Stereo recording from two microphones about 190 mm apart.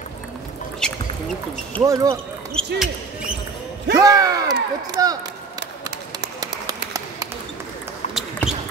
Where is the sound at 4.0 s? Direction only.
20° right (ahead or behind).